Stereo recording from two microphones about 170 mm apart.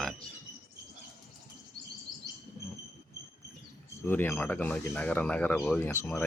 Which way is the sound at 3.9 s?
15° left (ahead or behind).